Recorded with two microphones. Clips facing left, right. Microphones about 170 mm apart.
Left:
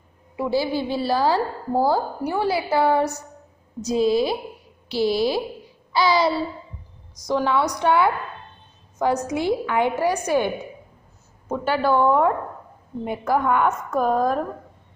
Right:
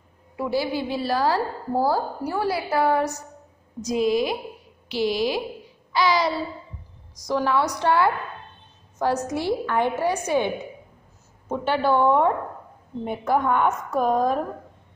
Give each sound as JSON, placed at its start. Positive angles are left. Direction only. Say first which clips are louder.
{"t": 0.4, "sound": "a woman's voice", "louder": "left 2 dB", "side_deg": 25}
{"t": 7.2, "sound": "a woman's voice", "louder": "left 1 dB", "side_deg": 20}